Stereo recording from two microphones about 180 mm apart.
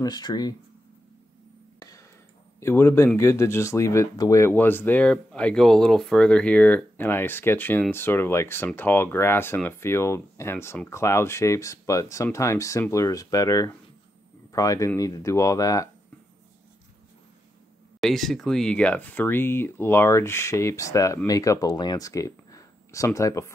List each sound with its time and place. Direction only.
0.0 s speech: 20° left (ahead or behind)
1.8 s music: 20° left (ahead or behind)
2.6 s speech: 15° left (ahead or behind)
18.0 s speech: centre (ahead or behind); by 23.5 s 15° left (ahead or behind)